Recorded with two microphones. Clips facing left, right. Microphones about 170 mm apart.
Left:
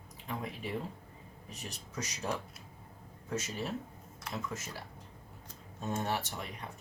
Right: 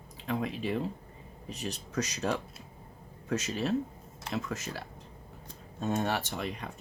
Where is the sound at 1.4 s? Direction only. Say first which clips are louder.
Right 9 dB; 75° right (ahead or behind).